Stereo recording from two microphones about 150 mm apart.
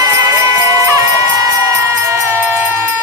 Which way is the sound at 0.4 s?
20° right (ahead or behind).